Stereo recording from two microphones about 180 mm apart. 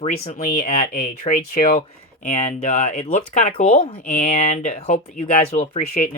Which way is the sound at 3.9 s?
50° left (ahead or behind).